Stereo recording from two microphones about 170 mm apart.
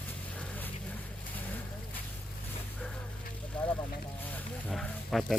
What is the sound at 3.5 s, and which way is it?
Vehicle, 5° left (ahead or behind).